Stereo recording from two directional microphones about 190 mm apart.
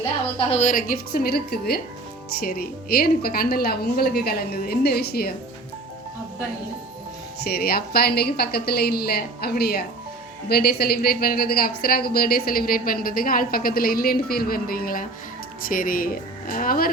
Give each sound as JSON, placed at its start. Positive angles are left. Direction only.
{"t": 0.3, "sound": "a woman's voice", "side_deg": 35}
{"t": 7.4, "sound": "a woman's voice", "side_deg": 55}